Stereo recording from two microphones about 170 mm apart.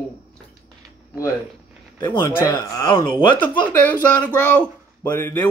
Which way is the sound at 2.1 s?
30° left (ahead or behind).